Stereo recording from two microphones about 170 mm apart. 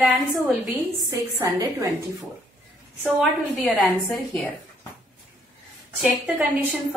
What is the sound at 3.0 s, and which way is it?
Speech, centre (ahead or behind).